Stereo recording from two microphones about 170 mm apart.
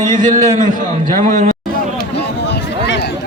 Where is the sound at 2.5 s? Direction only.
90° left.